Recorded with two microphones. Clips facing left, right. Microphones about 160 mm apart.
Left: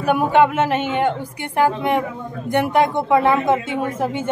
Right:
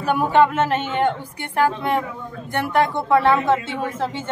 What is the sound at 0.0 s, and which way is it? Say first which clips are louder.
A woman's voice: left 1 dB; 10° left (ahead or behind).